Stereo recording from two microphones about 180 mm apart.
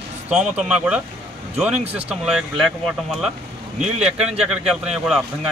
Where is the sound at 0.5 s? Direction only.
5° right (ahead or behind).